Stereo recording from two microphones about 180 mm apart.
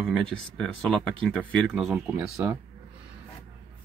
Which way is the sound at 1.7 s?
5° right (ahead or behind).